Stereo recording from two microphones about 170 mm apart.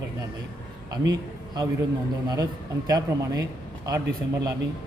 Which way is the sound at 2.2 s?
20° right (ahead or behind).